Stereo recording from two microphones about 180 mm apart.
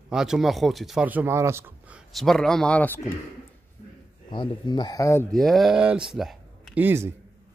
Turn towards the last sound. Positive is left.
turn(degrees=-10)  # may be behind; listen again after turning